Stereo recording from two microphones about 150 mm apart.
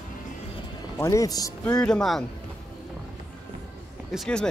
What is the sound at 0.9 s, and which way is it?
Speech, 20° left (ahead or behind).